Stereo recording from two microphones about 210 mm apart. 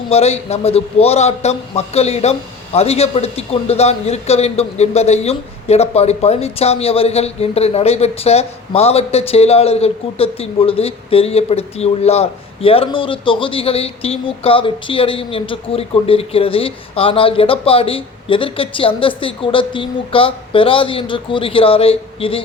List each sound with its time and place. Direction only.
0.1 s a man's voice: 30° left (ahead or behind)